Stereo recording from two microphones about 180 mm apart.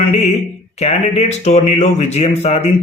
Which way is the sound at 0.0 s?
40° left (ahead or behind).